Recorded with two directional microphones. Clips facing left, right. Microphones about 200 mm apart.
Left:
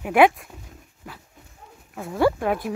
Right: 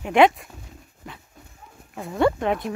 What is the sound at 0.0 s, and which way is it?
Speech, 5° left (ahead or behind).